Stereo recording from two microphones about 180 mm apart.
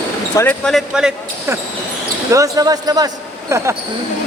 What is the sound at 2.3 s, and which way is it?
Speech, 20° right (ahead or behind).